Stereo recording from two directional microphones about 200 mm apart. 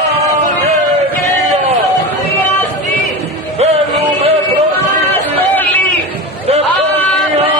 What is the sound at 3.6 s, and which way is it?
Music, 30° right (ahead or behind).